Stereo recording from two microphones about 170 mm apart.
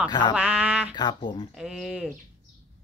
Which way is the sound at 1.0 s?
25° left (ahead or behind).